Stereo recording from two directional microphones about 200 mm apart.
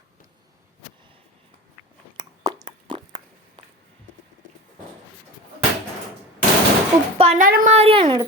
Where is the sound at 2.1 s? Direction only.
20° right (ahead or behind).